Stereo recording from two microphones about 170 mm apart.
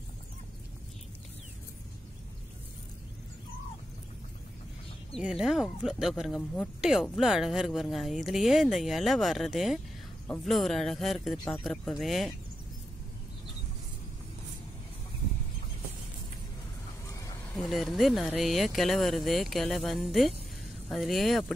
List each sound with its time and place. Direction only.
5.1 s speech: centre (ahead or behind)
17.1 s a sound: 20° left (ahead or behind)
17.6 s speech: centre (ahead or behind)